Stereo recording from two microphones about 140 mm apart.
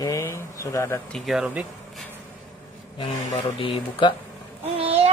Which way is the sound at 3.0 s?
35° left (ahead or behind).